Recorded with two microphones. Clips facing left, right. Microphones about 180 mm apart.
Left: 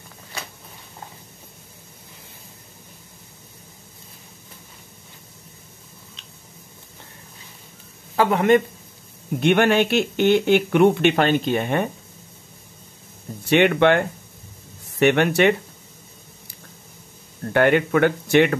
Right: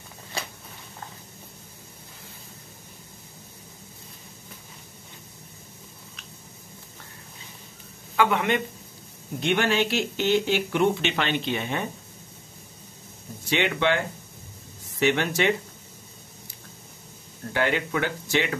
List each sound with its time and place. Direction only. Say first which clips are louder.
8.2 s speech: left 6 dB; 40° left (ahead or behind)
9.4 s speech: left 6 dB; 60° left (ahead or behind)
13.4 s speech: left 8 dB; 60° left (ahead or behind)
17.5 s speech: left 8 dB; 55° left (ahead or behind)